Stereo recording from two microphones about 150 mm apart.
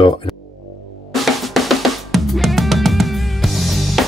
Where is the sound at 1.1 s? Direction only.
Centre (ahead or behind).